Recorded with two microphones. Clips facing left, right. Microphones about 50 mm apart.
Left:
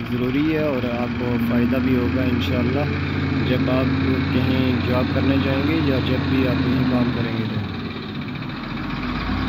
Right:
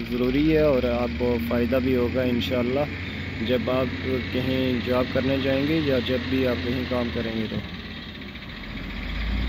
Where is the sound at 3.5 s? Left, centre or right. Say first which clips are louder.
Left 1 dB; left.